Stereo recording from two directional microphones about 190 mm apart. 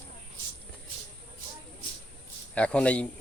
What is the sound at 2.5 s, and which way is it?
Speech, 5° left (ahead or behind).